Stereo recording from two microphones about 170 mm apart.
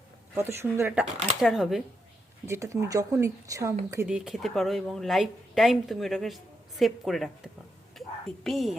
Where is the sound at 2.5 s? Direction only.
15° right (ahead or behind).